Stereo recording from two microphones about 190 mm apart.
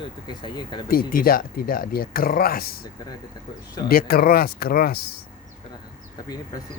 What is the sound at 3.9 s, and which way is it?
Speech, 50° left (ahead or behind).